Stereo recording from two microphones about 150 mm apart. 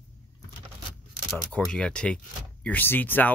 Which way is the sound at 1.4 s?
5° left (ahead or behind).